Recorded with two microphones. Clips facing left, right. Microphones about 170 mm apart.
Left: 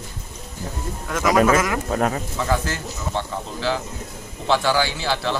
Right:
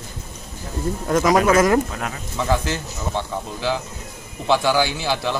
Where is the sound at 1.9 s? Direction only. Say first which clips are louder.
Left 8 dB; 40° left (ahead or behind).